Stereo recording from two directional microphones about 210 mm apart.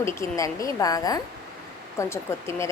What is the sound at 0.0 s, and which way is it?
Speech, 15° left (ahead or behind).